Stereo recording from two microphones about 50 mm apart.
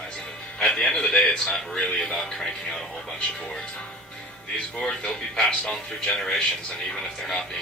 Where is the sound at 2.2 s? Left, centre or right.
Centre.